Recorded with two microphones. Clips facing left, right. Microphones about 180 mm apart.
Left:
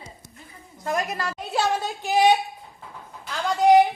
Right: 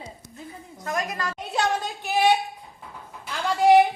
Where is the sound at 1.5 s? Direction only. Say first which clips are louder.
Left 1 dB; 5° left (ahead or behind).